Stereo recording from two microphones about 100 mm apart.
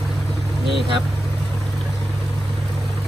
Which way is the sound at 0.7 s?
55° right (ahead or behind).